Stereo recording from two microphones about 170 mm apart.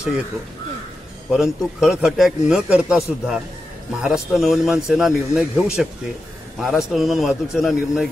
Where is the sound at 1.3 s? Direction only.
5° right (ahead or behind).